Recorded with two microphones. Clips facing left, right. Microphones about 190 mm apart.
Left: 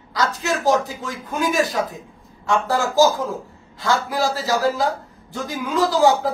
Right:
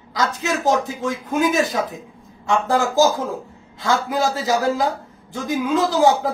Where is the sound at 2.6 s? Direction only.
20° right (ahead or behind).